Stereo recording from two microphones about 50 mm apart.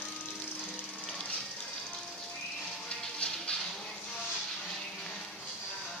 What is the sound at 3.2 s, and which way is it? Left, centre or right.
Music, centre.